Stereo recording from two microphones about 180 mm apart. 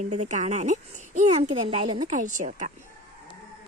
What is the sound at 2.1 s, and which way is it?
Speech, 45° right (ahead or behind).